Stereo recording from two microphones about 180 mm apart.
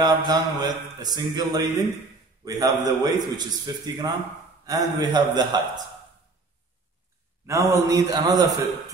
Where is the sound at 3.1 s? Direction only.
20° right (ahead or behind).